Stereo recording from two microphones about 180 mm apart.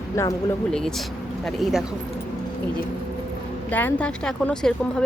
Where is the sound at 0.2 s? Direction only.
15° left (ahead or behind).